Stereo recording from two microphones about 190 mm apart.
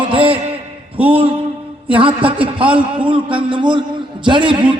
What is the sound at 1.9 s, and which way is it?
A man's voice, 25° right (ahead or behind).